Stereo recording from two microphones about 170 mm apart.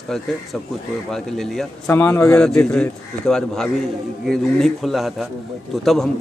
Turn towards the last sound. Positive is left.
turn(degrees=0)  # may be behind; listen again after turning